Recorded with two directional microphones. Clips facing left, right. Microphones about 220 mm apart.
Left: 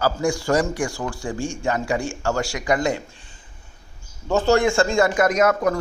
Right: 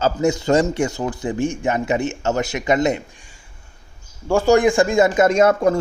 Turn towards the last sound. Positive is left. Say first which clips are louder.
# right 4 dB
turn(degrees=-30)  # may be behind; listen again after turning